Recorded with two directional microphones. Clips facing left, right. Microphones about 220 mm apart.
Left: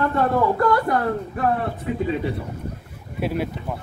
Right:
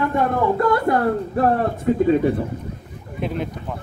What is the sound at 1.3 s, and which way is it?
Speech, 40° right (ahead or behind).